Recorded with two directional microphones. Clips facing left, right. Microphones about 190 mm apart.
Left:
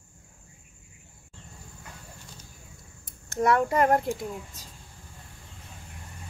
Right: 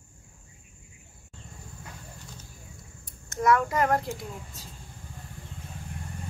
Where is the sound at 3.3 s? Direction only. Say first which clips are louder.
Left 1 dB; 35° left (ahead or behind).